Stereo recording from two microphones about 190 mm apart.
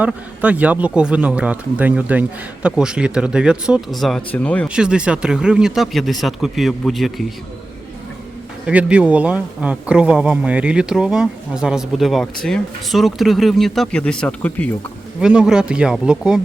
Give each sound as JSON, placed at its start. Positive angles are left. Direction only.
{"t": 0.0, "sound": "speech", "side_deg": -10}
{"t": 4.7, "sound": "speech", "side_deg": -5}
{"t": 8.6, "sound": "speech", "side_deg": -5}
{"t": 15.2, "sound": "speech", "side_deg": -5}